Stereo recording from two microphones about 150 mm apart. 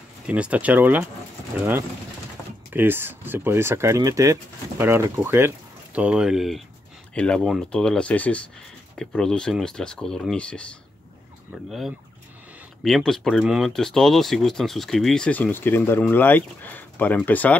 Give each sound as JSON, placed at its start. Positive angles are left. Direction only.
{"t": 0.3, "sound": "speech", "side_deg": -10}
{"t": 2.7, "sound": "speech", "side_deg": -15}